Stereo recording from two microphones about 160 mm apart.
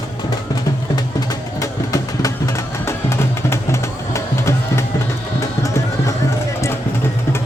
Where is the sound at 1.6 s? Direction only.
20° left (ahead or behind).